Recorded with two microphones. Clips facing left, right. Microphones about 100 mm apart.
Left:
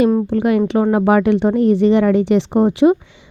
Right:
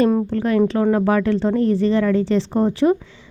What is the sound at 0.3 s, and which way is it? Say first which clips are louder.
A woman's voice: left 2 dB; 20° left (ahead or behind).